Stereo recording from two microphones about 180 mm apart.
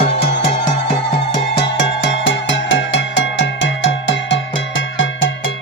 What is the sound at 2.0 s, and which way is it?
Music, 90° left.